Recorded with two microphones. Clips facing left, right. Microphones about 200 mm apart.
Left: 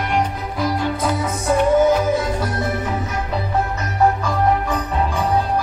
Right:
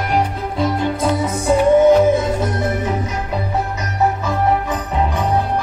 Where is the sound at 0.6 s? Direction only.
25° right (ahead or behind).